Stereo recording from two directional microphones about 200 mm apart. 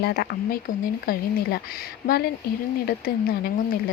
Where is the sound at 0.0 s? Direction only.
50° left (ahead or behind).